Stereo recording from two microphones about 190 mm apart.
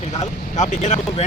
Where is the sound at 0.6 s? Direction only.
40° left (ahead or behind).